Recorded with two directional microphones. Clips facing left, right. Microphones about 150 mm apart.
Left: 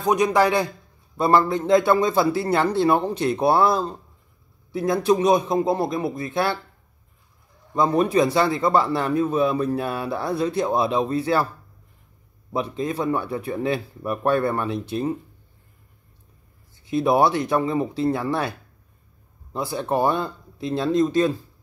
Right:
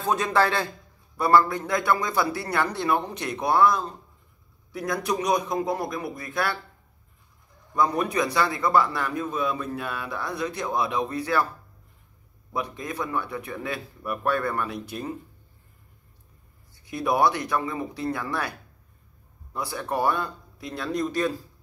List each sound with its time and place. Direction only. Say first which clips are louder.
0.0 s a man's voice: left 4 dB; 15° left (ahead or behind)
7.7 s a man's voice: left 5 dB; 25° left (ahead or behind)
12.5 s a man's voice: left 6 dB; 25° left (ahead or behind)
16.7 s a man's voice: left 6 dB; 25° left (ahead or behind)
19.5 s a man's voice: left 5 dB; 25° left (ahead or behind)